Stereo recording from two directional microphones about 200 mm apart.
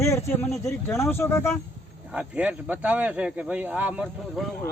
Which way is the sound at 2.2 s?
5° right (ahead or behind).